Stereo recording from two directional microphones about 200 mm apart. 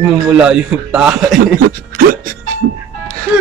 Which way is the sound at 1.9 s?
45° right (ahead or behind).